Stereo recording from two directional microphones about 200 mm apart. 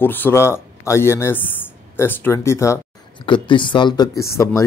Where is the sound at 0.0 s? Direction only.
10° left (ahead or behind).